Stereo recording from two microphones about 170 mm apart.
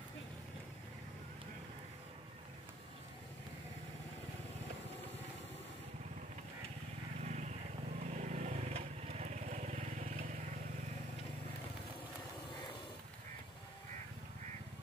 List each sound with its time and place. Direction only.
7.2 s vehicle: 40° right (ahead or behind)